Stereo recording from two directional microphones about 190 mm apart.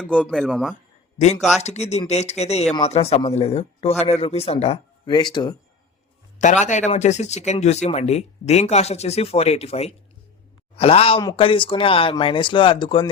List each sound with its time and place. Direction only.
0.0 s speech: 5° left (ahead or behind)
1.6 s speech: 35° left (ahead or behind)
6.4 s speech: 40° left (ahead or behind)